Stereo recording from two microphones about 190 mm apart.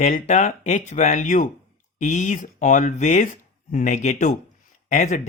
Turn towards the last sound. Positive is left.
turn(degrees=40)  # may be behind; listen again after turning